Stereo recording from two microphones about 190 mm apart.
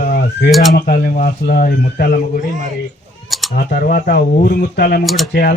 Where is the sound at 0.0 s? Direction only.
45° left (ahead or behind).